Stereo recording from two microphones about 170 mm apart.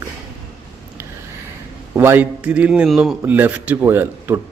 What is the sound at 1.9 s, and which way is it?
A man's voice, 15° right (ahead or behind).